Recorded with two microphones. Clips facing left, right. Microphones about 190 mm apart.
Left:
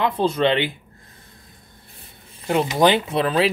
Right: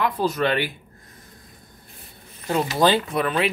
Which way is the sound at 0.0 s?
25° left (ahead or behind).